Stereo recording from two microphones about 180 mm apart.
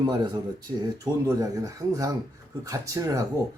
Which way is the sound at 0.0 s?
25° right (ahead or behind).